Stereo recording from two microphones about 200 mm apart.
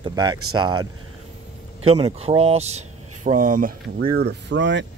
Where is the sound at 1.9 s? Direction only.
30° right (ahead or behind).